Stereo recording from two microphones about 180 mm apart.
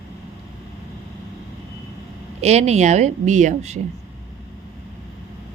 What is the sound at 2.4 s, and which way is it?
A woman's voice, 35° right (ahead or behind).